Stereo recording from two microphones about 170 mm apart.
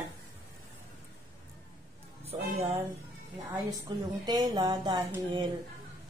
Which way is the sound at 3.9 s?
25° right (ahead or behind).